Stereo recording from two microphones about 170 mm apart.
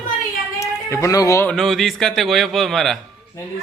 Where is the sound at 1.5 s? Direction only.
Centre (ahead or behind).